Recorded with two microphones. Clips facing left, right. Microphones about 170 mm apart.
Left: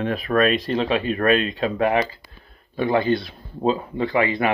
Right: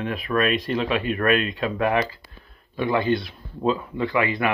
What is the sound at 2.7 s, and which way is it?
Speech, 35° left (ahead or behind).